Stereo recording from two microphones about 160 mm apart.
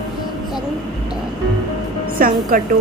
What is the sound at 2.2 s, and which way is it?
Speech, 60° right (ahead or behind).